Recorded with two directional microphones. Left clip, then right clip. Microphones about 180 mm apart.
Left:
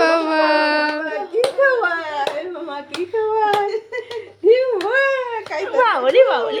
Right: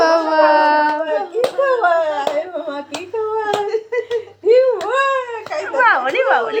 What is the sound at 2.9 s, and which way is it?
Hands, 40° left (ahead or behind).